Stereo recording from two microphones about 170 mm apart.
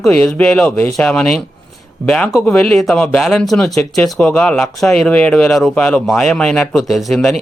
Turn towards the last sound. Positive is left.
turn(degrees=0)  # may be behind; listen again after turning